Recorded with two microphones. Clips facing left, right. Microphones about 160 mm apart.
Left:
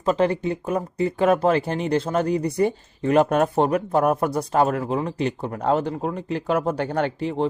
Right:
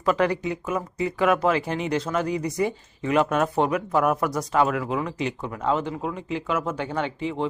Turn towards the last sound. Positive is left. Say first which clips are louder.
# left 4 dB
turn(degrees=40)  # may be behind; listen again after turning